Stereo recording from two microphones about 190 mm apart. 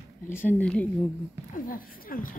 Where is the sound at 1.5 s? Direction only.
50° left (ahead or behind).